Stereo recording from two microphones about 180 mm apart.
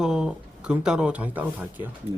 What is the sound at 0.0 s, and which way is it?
Speech, 5° right (ahead or behind).